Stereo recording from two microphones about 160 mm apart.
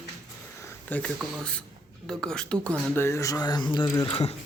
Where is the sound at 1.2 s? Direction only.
5° left (ahead or behind); by 3.8 s 25° left (ahead or behind).